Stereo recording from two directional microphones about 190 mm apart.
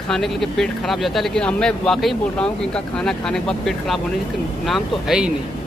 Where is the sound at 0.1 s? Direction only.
Centre (ahead or behind).